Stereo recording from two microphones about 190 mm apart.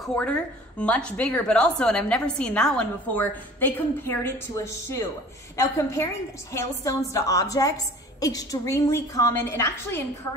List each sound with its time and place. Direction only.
0.0 s a woman's voice: 5° left (ahead or behind)